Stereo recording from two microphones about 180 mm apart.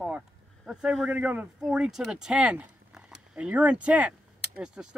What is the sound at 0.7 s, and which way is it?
Speech, centre (ahead or behind).